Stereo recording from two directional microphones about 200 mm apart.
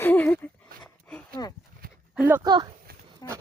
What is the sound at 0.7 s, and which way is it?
Dog, 5° left (ahead or behind).